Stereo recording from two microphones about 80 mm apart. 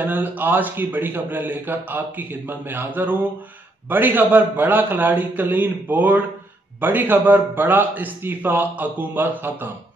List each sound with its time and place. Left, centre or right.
0.0 s a man's voice: right